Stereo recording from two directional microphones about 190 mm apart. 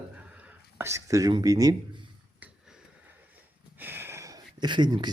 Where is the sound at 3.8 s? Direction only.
10° right (ahead or behind).